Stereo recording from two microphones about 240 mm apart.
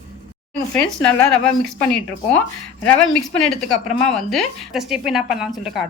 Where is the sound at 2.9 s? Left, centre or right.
Centre.